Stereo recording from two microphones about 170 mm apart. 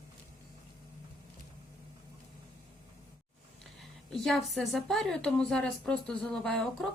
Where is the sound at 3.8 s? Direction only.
Centre (ahead or behind).